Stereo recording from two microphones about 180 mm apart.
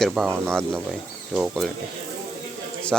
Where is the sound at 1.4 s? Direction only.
Centre (ahead or behind).